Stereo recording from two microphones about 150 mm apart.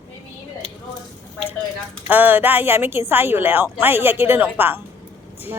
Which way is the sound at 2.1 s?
10° right (ahead or behind).